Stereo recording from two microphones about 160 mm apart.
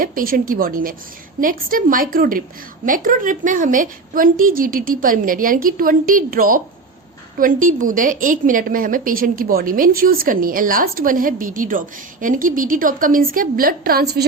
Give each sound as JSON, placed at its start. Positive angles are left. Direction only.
{"t": 0.0, "sound": "a woman's voice", "side_deg": -60}